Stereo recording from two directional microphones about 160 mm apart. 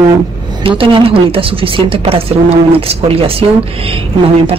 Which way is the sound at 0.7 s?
35° right (ahead or behind).